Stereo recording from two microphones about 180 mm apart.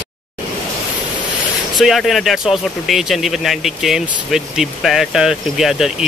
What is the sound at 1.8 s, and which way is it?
Speech, centre (ahead or behind).